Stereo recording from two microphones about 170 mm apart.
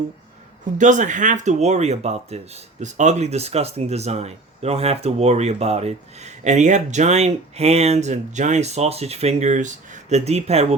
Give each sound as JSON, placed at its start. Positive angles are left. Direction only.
{"t": 0.8, "sound": "speech", "side_deg": -45}